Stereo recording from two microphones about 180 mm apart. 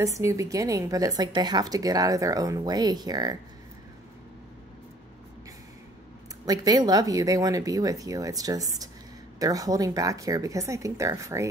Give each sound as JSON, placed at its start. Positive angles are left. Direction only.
{"t": 0.0, "sound": "a woman's voice", "side_deg": -15}
{"t": 6.4, "sound": "a woman's voice", "side_deg": -20}